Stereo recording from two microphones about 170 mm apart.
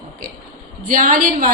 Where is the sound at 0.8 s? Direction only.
60° right (ahead or behind).